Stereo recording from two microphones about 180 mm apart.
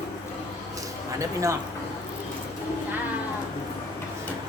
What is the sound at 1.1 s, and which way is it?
Speech, 15° right (ahead or behind).